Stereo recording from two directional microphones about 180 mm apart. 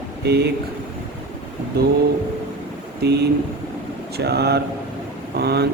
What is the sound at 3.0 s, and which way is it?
Speech, 60° right (ahead or behind).